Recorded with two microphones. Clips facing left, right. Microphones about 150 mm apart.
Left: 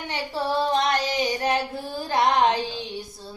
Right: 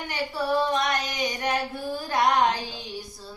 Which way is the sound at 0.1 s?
25° left (ahead or behind).